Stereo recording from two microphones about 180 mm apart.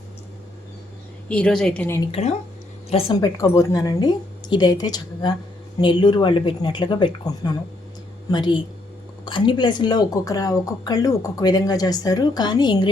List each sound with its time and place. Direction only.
1.3 s a woman's voice: 5° left (ahead or behind)
2.2 s speech: 35° left (ahead or behind)
3.2 s a woman's voice: 15° left (ahead or behind)